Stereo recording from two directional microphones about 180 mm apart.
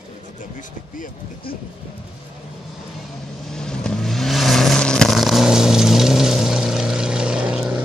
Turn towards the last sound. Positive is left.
turn(degrees=-5)  # may be behind; listen again after turning